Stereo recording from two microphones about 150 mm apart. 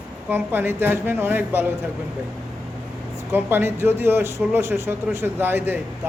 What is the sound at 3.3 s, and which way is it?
A woman's voice, 15° right (ahead or behind).